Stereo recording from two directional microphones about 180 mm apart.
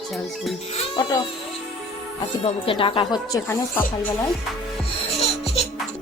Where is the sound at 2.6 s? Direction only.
30° left (ahead or behind); by 4.3 s 15° left (ahead or behind).